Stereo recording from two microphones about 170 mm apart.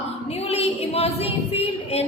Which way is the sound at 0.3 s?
35° left (ahead or behind).